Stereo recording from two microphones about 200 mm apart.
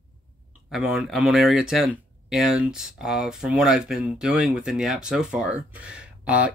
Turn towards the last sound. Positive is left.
turn(degrees=-5)  # may be behind; listen again after turning